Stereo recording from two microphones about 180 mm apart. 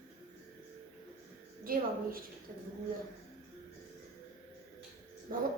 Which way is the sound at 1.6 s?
55° right (ahead or behind).